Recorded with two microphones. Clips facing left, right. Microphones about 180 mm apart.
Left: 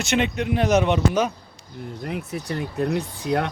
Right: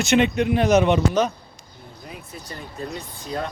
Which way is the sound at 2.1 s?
70° left (ahead or behind).